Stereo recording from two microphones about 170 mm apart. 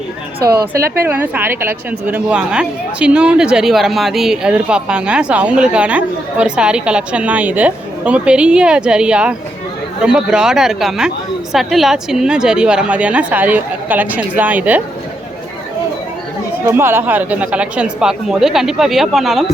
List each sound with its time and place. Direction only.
0.3 s speech: 65° right (ahead or behind)
1.0 s a woman's voice: 10° right (ahead or behind)
16.6 s speech: 15° right (ahead or behind)